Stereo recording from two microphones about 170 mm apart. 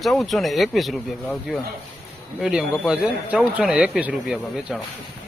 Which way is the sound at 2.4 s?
5° right (ahead or behind).